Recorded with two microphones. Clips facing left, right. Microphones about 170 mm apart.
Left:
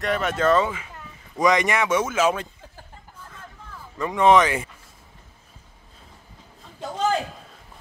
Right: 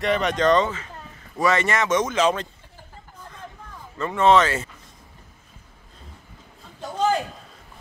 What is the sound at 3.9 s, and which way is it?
Speech, 15° left (ahead or behind).